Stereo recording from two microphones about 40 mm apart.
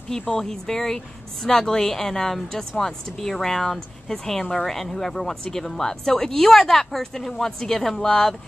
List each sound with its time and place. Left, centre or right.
0.1 s speech: left
0.4 s a woman's voice: centre